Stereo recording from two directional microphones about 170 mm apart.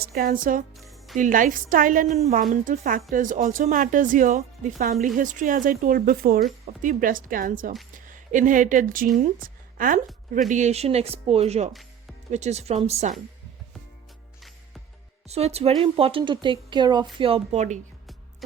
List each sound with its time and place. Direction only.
0.0 s speech: 60° right (ahead or behind)
0.9 s music: centre (ahead or behind)
1.2 s a woman's voice: 50° right (ahead or behind)
10.5 s speech: 40° right (ahead or behind)
15.3 s speech: 40° right (ahead or behind)